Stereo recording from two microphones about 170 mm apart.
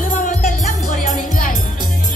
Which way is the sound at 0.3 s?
45° left (ahead or behind).